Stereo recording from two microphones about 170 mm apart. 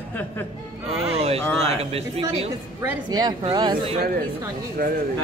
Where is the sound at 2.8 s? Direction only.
20° right (ahead or behind).